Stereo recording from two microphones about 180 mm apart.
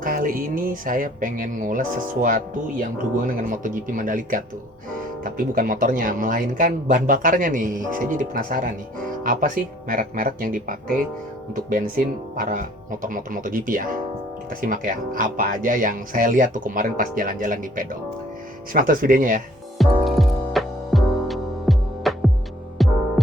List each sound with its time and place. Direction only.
0.0 s speech: 50° right (ahead or behind)
19.8 s music: centre (ahead or behind)